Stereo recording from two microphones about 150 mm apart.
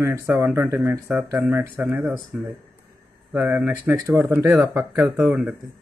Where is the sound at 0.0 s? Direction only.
15° right (ahead or behind).